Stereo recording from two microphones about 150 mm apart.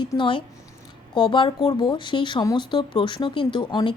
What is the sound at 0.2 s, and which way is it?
A woman's voice, 35° left (ahead or behind).